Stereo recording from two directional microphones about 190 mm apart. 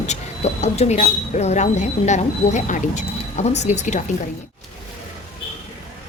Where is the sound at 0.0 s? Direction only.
35° left (ahead or behind).